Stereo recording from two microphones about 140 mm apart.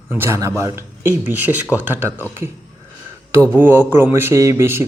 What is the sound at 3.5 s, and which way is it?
Speech, 15° right (ahead or behind).